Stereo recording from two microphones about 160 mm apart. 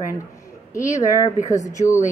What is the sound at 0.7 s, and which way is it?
A woman's voice, 20° left (ahead or behind).